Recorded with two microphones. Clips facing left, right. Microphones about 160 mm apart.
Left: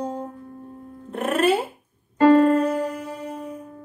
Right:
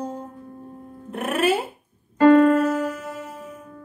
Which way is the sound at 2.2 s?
30° left (ahead or behind).